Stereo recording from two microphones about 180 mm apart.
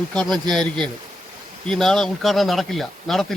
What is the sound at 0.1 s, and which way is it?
Speech, 5° left (ahead or behind).